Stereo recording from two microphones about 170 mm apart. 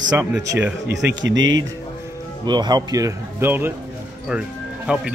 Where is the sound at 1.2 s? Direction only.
90° right.